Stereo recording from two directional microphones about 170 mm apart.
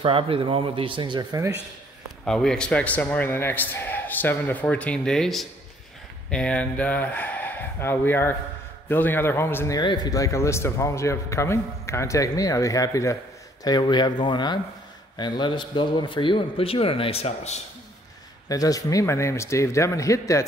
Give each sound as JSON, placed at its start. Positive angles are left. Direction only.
{"t": 0.0, "sound": "speech", "side_deg": -30}
{"t": 2.2, "sound": "a man's voice", "side_deg": 5}
{"t": 18.5, "sound": "a man's voice", "side_deg": 20}